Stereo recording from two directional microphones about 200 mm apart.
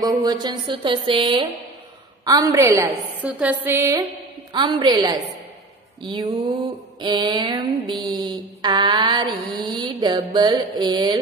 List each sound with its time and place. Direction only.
0.0 s mantra: 20° right (ahead or behind)
2.2 s a woman's voice: 15° right (ahead or behind)
6.0 s mantra: 20° right (ahead or behind)